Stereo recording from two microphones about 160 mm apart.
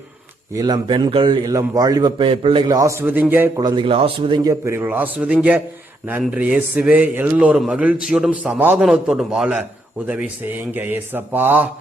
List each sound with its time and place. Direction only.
0.5 s a man's voice: 25° right (ahead or behind)
2.7 s a man's voice: 20° right (ahead or behind)
3.6 s speech: 30° right (ahead or behind)
4.6 s a man's voice: 15° right (ahead or behind)
10.7 s a man's voice: 10° right (ahead or behind)